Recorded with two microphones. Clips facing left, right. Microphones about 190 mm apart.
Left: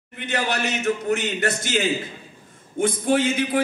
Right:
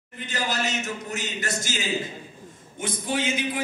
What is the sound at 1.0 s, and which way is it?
A man's voice, 60° left (ahead or behind).